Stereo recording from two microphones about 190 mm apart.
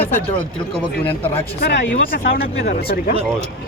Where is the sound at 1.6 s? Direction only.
55° left (ahead or behind).